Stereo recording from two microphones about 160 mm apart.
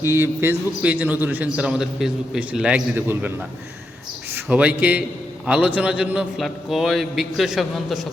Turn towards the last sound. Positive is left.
turn(degrees=0)  # may be behind; listen again after turning